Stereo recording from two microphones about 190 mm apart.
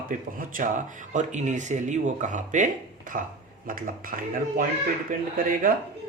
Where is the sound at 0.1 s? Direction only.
45° right (ahead or behind).